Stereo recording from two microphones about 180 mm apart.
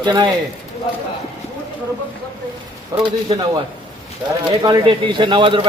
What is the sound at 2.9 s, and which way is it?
Speech, 20° right (ahead or behind).